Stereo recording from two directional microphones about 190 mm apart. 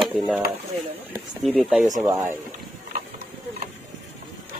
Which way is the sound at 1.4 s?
Centre (ahead or behind).